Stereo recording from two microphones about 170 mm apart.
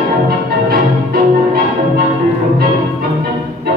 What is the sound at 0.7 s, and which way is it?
Music, 65° right (ahead or behind).